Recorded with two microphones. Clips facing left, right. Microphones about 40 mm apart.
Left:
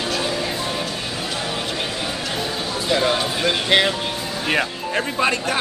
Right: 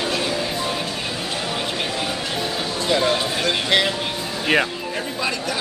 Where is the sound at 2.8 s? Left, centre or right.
Centre.